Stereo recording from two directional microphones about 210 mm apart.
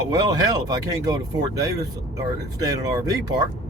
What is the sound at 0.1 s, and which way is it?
Speech, 20° right (ahead or behind).